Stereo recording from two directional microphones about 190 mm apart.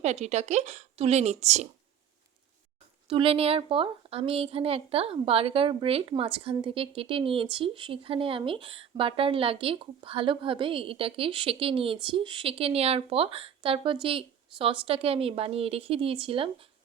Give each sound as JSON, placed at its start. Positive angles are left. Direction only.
{"t": 0.0, "sound": "a woman's voice", "side_deg": -35}
{"t": 3.1, "sound": "speech", "side_deg": -30}